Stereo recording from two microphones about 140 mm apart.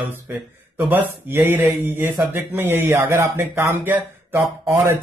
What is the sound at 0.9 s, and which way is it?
Speech, 15° right (ahead or behind).